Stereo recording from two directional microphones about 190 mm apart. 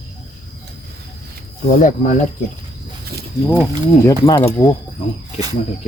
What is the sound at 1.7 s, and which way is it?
Speech, 40° left (ahead or behind).